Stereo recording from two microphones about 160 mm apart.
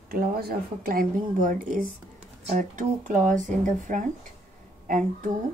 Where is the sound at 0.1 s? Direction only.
70° right (ahead or behind).